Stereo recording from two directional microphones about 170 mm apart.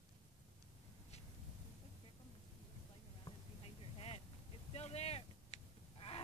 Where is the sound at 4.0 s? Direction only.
35° left (ahead or behind).